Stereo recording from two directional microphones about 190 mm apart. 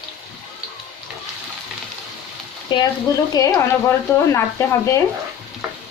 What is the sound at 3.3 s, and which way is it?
Speech, 20° left (ahead or behind).